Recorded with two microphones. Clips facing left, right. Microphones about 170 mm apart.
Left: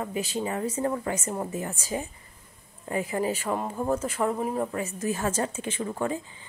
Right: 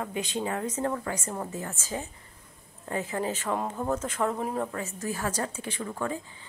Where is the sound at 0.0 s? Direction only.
5° left (ahead or behind).